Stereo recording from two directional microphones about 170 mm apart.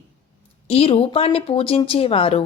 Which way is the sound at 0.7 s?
35° left (ahead or behind).